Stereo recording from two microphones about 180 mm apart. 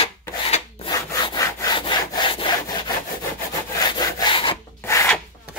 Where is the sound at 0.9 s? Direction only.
20° left (ahead or behind).